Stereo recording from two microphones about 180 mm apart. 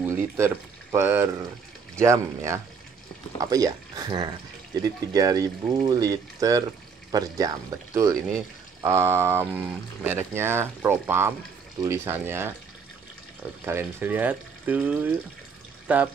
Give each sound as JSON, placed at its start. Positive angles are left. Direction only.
{"t": 0.9, "sound": "speech", "side_deg": -15}
{"t": 13.7, "sound": "speech", "side_deg": -15}